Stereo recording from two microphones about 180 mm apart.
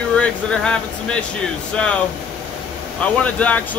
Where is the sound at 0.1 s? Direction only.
5° left (ahead or behind).